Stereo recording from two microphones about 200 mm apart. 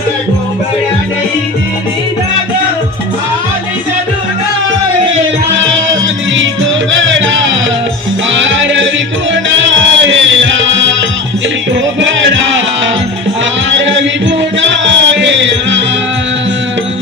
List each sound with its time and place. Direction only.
6.3 s music: 70° right (ahead or behind)
12.0 s music: 70° right (ahead or behind)